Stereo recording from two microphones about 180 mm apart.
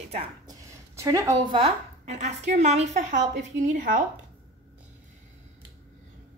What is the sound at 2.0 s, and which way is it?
A woman's voice, 40° right (ahead or behind).